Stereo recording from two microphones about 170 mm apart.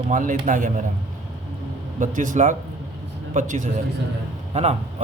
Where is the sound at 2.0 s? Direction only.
50° right (ahead or behind).